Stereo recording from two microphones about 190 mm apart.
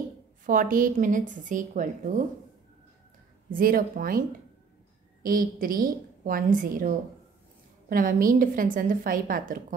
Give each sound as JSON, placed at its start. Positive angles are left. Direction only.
{"t": 0.5, "sound": "a woman's voice", "side_deg": -45}
{"t": 3.4, "sound": "a woman's voice", "side_deg": -45}
{"t": 5.2, "sound": "a woman's voice", "side_deg": -50}